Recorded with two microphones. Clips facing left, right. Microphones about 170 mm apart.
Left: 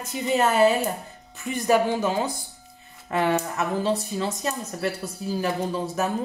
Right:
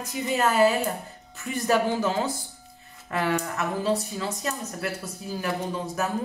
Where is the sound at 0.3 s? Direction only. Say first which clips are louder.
Left 2 dB; 25° left (ahead or behind).